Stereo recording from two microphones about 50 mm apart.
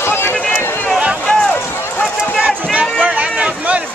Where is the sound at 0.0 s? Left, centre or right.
Left.